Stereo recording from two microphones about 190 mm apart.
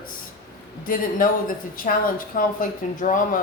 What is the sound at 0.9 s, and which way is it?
Speech, 45° left (ahead or behind).